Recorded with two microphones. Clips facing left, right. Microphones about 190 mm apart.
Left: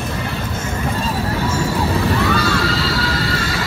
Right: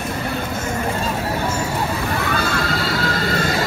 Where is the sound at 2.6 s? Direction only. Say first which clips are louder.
Left 1 dB; 50° right (ahead or behind).